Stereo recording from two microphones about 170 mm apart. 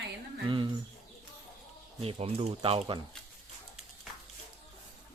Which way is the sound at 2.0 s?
35° right (ahead or behind).